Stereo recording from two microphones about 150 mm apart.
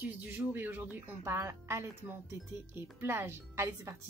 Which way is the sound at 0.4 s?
15° right (ahead or behind).